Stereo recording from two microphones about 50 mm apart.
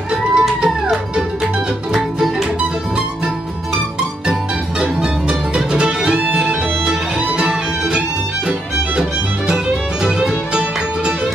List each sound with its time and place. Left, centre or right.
0.1 s music: centre
5.0 s music: centre
10.0 s music: centre